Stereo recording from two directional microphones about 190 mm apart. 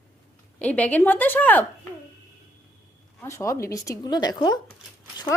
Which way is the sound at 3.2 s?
15° left (ahead or behind).